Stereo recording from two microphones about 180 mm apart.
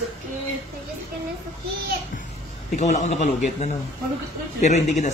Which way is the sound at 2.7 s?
40° left (ahead or behind).